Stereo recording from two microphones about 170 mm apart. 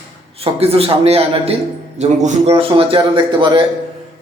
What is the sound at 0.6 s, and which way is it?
A man's voice, 35° right (ahead or behind).